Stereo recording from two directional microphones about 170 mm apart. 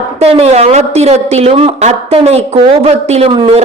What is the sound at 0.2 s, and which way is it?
A woman's voice, 40° right (ahead or behind).